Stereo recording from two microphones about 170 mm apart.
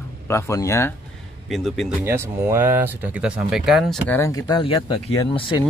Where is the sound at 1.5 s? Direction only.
Centre (ahead or behind).